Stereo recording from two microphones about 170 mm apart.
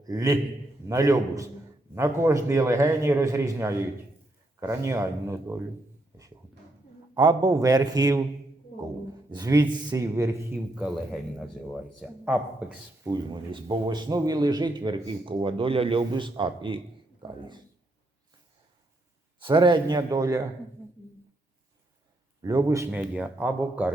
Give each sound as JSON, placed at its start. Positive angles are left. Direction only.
{"t": 0.0, "sound": "a man's voice", "side_deg": -20}
{"t": 7.1, "sound": "a man's voice", "side_deg": -25}
{"t": 9.3, "sound": "a man's voice", "side_deg": -25}
{"t": 10.8, "sound": "a man's voice", "side_deg": 0}
{"t": 13.1, "sound": "a man's voice", "side_deg": -25}
{"t": 19.4, "sound": "a man's voice", "side_deg": -30}
{"t": 22.4, "sound": "a man's voice", "side_deg": -20}
{"t": 22.9, "sound": "a man's voice", "side_deg": -10}